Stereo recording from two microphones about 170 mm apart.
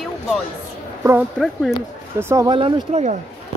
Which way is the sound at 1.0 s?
15° right (ahead or behind).